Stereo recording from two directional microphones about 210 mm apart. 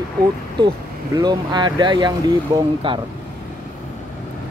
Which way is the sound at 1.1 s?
20° right (ahead or behind).